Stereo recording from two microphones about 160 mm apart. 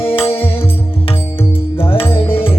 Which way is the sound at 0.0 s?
35° left (ahead or behind).